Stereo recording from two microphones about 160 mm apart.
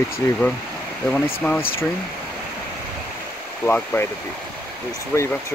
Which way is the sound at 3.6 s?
15° left (ahead or behind).